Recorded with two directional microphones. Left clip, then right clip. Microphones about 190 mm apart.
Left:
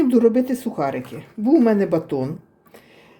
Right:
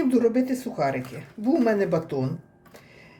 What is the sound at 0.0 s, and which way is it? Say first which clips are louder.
Speech: left 5 dB; 35° left (ahead or behind).